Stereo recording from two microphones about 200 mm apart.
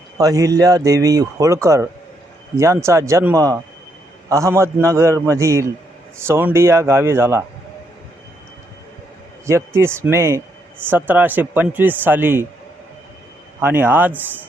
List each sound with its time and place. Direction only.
0.2 s speech: 15° right (ahead or behind)
9.5 s speech: 15° right (ahead or behind)
13.6 s speech: 10° right (ahead or behind)